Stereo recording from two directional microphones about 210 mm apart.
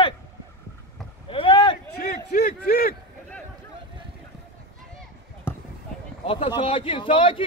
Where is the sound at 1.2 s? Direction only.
25° left (ahead or behind).